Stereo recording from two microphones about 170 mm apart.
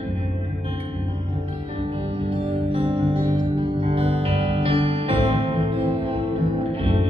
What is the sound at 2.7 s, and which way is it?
Music, 35° right (ahead or behind).